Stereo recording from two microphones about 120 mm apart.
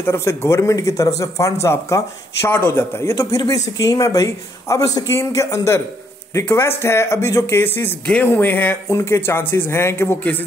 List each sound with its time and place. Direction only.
0.0 s speech: 20° left (ahead or behind)